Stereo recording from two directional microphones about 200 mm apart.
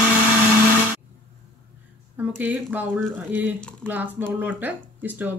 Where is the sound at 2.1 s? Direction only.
10° right (ahead or behind).